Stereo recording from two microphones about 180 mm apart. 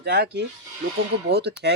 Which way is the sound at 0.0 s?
70° right (ahead or behind).